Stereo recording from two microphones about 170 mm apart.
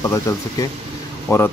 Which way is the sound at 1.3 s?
15° left (ahead or behind).